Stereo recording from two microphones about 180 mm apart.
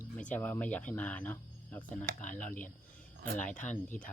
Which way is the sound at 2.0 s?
45° left (ahead or behind).